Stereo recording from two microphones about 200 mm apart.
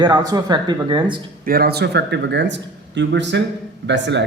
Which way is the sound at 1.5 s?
50° right (ahead or behind).